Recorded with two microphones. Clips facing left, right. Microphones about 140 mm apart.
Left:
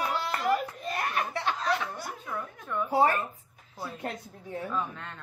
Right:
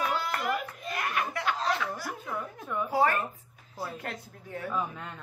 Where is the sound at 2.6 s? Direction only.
5° right (ahead or behind).